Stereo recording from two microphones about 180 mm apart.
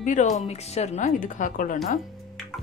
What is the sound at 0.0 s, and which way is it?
Speech, 45° left (ahead or behind).